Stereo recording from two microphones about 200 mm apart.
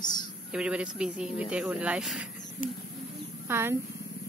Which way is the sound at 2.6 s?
40° left (ahead or behind).